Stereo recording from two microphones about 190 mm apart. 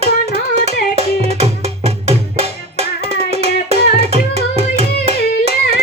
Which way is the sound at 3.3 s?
35° right (ahead or behind).